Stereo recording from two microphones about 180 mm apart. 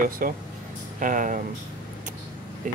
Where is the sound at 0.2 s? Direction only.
50° right (ahead or behind).